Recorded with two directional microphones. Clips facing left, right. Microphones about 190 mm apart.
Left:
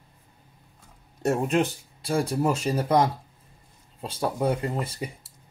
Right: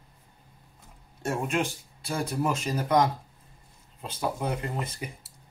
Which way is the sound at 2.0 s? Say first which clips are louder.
Left 4 dB; 30° left (ahead or behind).